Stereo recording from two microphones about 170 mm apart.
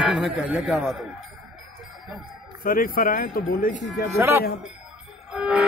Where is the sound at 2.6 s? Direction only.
55° left (ahead or behind).